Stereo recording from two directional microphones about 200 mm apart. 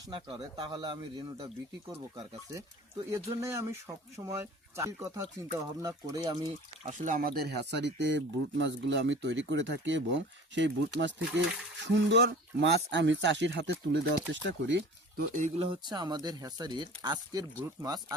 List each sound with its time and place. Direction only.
0.1 s speech: 25° right (ahead or behind)
6.8 s speech: 40° right (ahead or behind); by 14.8 s 60° right (ahead or behind)
15.3 s speech: 35° right (ahead or behind); by 18.0 s 20° right (ahead or behind)